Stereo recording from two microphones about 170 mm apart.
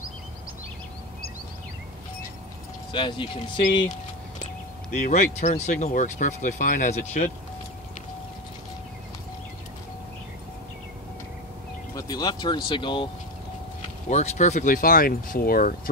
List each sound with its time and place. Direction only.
2.9 s speech: 30° left (ahead or behind)
4.9 s speech: 45° left (ahead or behind)
11.9 s speech: 20° left (ahead or behind)
14.0 s speech: 40° left (ahead or behind); by 15.7 s 60° left (ahead or behind)